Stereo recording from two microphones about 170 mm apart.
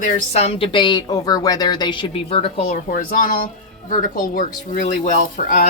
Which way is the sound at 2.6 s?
55° left (ahead or behind).